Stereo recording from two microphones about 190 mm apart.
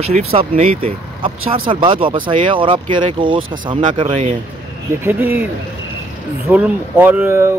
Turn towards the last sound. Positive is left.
turn(degrees=-10)  # may be behind; listen again after turning